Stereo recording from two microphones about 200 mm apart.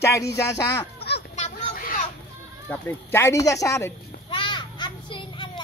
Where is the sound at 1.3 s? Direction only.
40° left (ahead or behind).